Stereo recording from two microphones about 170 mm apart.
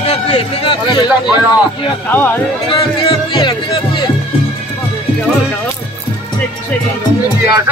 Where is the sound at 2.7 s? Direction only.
30° left (ahead or behind).